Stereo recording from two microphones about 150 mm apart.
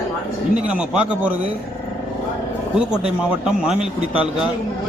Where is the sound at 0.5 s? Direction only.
5° right (ahead or behind).